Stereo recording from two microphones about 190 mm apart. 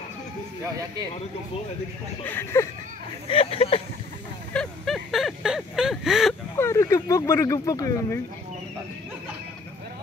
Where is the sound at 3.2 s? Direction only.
30° left (ahead or behind).